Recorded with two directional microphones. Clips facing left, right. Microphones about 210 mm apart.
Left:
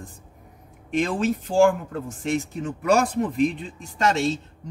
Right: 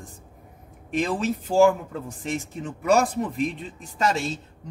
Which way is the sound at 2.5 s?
Centre (ahead or behind).